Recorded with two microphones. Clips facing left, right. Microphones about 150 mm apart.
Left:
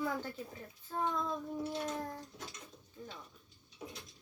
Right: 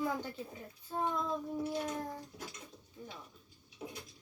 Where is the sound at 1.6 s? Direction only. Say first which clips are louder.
Right 1 dB; 10° right (ahead or behind).